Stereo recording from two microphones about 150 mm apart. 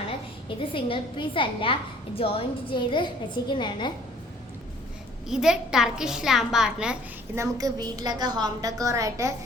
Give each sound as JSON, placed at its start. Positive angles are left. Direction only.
{"t": 0.4, "sound": "a woman's voice", "side_deg": 35}
{"t": 5.3, "sound": "a child's voice", "side_deg": -5}
{"t": 7.3, "sound": "a woman's voice", "side_deg": -20}